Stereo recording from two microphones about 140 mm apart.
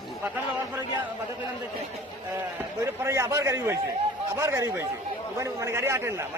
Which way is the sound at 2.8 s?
20° right (ahead or behind).